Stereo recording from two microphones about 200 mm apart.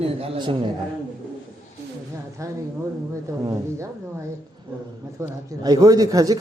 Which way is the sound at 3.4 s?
15° right (ahead or behind).